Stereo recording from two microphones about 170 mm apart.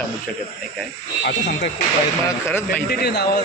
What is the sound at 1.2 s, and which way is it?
Speech, 85° left.